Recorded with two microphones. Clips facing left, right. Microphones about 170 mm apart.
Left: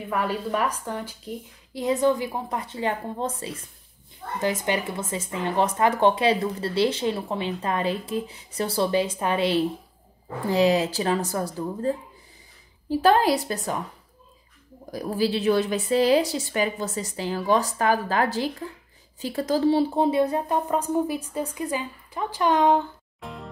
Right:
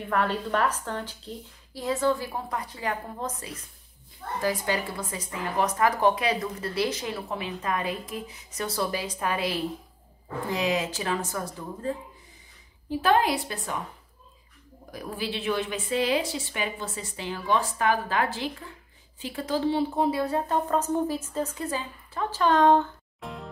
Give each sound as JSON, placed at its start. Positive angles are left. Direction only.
{"t": 0.1, "sound": "a woman's voice", "side_deg": 10}
{"t": 13.0, "sound": "a woman's voice", "side_deg": 40}
{"t": 14.9, "sound": "a woman's voice", "side_deg": 35}
{"t": 20.1, "sound": "a woman's voice", "side_deg": 20}
{"t": 23.2, "sound": "music", "side_deg": 0}